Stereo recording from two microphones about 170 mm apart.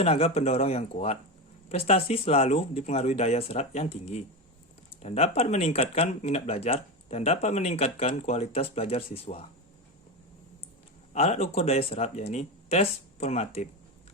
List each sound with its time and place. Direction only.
0.0 s speech: 35° left (ahead or behind)
11.1 s speech: 40° left (ahead or behind)